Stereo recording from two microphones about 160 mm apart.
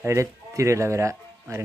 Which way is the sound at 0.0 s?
20° right (ahead or behind).